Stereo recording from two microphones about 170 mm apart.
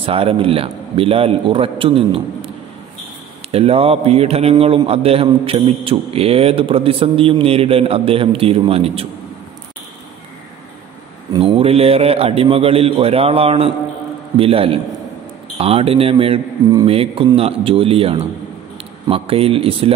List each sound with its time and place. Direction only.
0.0 s a man's voice: 35° right (ahead or behind)
3.5 s a man's voice: 35° right (ahead or behind)
11.3 s a man's voice: 35° right (ahead or behind)